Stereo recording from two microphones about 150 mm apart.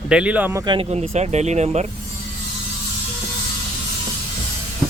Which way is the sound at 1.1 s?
50° right (ahead or behind).